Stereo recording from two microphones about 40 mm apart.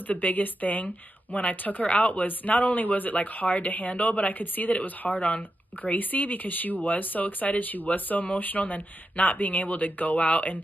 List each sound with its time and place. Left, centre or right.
0.0 s speech: left